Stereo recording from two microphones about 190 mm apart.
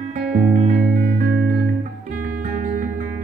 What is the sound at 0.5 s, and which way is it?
Music, 40° right (ahead or behind).